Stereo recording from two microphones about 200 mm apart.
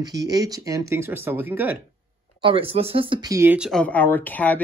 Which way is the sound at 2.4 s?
25° right (ahead or behind).